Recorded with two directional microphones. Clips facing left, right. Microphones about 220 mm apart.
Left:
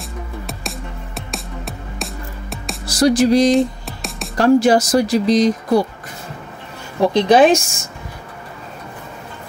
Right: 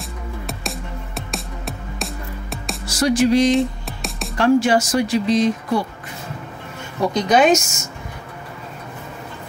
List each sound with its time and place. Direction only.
0.0 s music: centre (ahead or behind)
2.9 s music: 35° left (ahead or behind)
3.5 s music: centre (ahead or behind)
4.4 s speech: 40° left (ahead or behind)
7.2 s speech: 30° left (ahead or behind)